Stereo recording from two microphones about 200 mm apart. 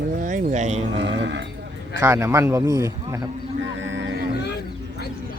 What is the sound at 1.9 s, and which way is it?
A man's voice, 10° right (ahead or behind).